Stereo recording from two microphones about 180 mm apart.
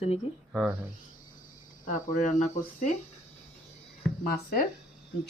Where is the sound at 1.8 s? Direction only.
45° left (ahead or behind).